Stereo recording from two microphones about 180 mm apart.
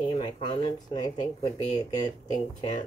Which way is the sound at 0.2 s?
25° left (ahead or behind).